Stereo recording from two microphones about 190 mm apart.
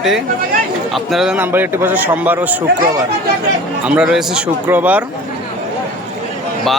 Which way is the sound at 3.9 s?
5° right (ahead or behind).